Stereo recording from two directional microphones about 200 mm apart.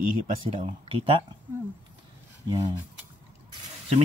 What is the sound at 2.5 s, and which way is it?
Speech, 20° right (ahead or behind).